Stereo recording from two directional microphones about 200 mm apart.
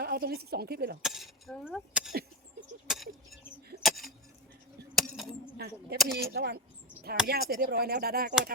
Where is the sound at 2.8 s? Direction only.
Centre (ahead or behind).